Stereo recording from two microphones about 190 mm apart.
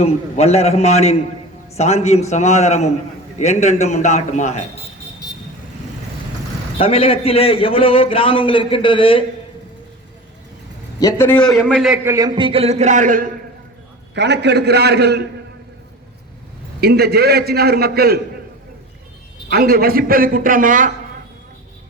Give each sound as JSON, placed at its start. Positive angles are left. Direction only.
{"t": 0.0, "sound": "a man's voice", "side_deg": 35}
{"t": 6.7, "sound": "a man's voice", "side_deg": 30}
{"t": 11.0, "sound": "a man's voice", "side_deg": 10}
{"t": 12.0, "sound": "speech", "side_deg": -20}
{"t": 14.2, "sound": "a man's voice", "side_deg": -65}
{"t": 16.8, "sound": "a man's voice", "side_deg": -55}
{"t": 19.5, "sound": "a man's voice", "side_deg": -55}